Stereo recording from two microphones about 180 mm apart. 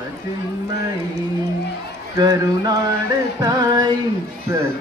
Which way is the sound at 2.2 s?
20° right (ahead or behind).